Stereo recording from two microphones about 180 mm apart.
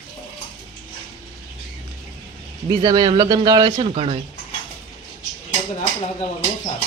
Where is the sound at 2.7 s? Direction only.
25° right (ahead or behind).